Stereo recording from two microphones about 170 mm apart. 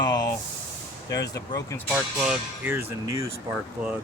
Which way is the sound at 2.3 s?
10° right (ahead or behind).